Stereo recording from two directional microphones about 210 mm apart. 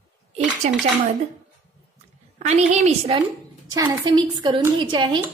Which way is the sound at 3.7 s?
20° right (ahead or behind).